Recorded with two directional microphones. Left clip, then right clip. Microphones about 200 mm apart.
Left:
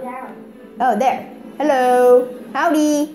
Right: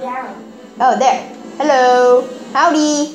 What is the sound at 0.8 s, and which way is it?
Speech, 30° left (ahead or behind).